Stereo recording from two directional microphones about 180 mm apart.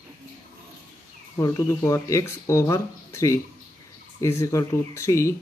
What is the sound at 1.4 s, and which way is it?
Speech, 15° left (ahead or behind).